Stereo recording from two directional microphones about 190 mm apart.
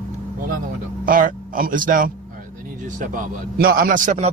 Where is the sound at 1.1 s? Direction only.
45° right (ahead or behind).